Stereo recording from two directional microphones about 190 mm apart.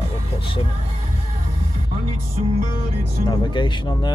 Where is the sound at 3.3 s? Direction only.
25° left (ahead or behind).